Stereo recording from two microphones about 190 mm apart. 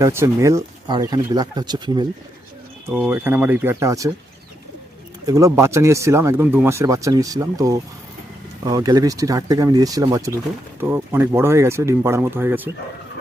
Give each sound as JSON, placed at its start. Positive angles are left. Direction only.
{"t": 0.0, "sound": "speech", "side_deg": -15}
{"t": 2.9, "sound": "speech", "side_deg": -10}
{"t": 5.2, "sound": "speech", "side_deg": -15}